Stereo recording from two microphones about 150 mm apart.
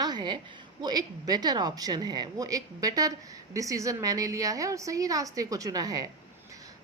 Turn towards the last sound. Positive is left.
turn(degrees=-25)  # may be behind; listen again after turning